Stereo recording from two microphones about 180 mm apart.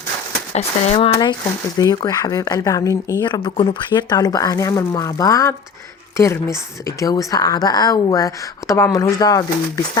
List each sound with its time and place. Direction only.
0.5 s speech: 35° left (ahead or behind)
1.8 s speech: 20° left (ahead or behind)